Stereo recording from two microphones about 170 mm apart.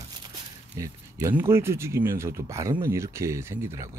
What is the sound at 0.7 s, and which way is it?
Speech, 15° right (ahead or behind).